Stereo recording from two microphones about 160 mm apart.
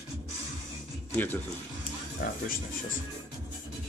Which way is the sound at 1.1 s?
10° left (ahead or behind).